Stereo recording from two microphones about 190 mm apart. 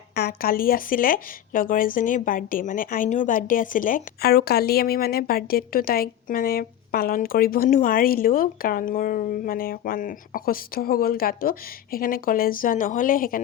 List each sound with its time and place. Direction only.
0.2 s a woman's voice: 50° left (ahead or behind)